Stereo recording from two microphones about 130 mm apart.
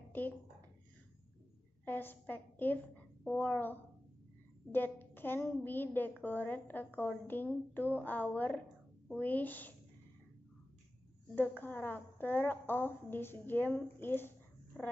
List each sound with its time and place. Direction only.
1.9 s a woman's voice: 15° left (ahead or behind)
4.7 s a woman's voice: 15° left (ahead or behind)
11.3 s a woman's voice: 15° left (ahead or behind)